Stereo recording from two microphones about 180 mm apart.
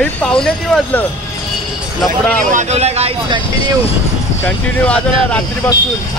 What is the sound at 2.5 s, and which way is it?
Speech, 40° right (ahead or behind).